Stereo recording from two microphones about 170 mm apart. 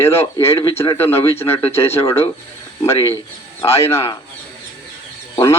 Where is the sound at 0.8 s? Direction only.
15° left (ahead or behind).